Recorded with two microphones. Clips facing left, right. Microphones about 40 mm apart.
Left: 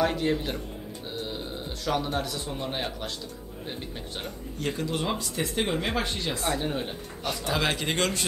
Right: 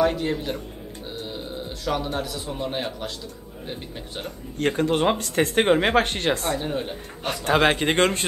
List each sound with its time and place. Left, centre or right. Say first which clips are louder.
0.0 s a man's voice: right 3 dB; centre
4.6 s speech: right 8 dB; right
6.6 s a man's voice: right 3 dB; centre
7.2 s a man's voice: right 7 dB; right